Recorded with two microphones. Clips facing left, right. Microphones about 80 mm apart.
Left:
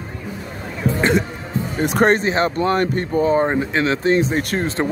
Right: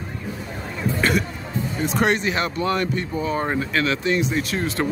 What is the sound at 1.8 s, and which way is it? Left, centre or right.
Speech, left.